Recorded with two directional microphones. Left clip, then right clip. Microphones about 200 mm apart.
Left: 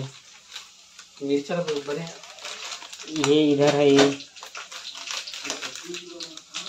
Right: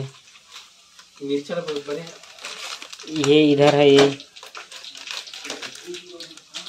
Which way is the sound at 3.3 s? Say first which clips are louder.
Right 4 dB; 20° right (ahead or behind).